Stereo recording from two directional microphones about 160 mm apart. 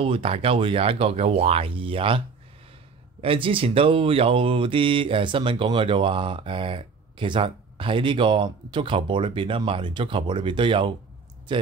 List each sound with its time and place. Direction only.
0.0 s speech: 35° right (ahead or behind)